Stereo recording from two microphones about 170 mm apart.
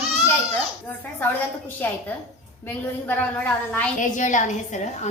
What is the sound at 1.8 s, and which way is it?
A woman's voice, 10° left (ahead or behind).